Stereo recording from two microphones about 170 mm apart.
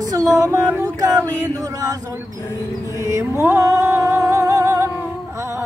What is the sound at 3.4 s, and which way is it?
Music, 10° right (ahead or behind).